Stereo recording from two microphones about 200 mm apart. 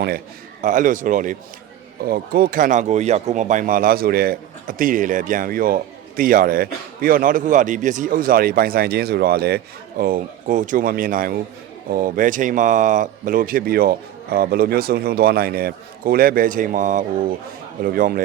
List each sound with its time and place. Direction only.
0.6 s speech: 40° right (ahead or behind)